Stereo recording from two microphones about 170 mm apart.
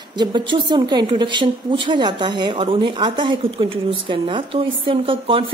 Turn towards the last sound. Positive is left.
turn(degrees=-30)  # may be behind; listen again after turning